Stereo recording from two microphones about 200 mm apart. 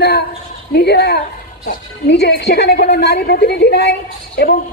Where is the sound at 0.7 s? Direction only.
55° left (ahead or behind).